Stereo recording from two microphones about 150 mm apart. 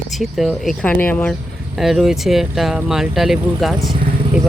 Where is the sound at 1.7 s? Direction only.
Centre (ahead or behind).